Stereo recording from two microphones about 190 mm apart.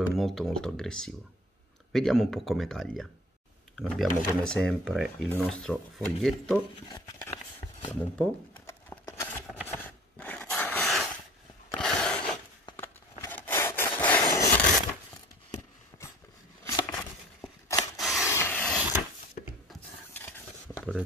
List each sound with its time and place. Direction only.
0.1 s speech: centre (ahead or behind)
8.2 s a sound: 5° left (ahead or behind)
16.6 s rub: 15° left (ahead or behind)
18.0 s printer: centre (ahead or behind)
18.3 s a sound: 10° left (ahead or behind)
19.4 s rub: 45° left (ahead or behind)
19.7 s stir: 10° left (ahead or behind)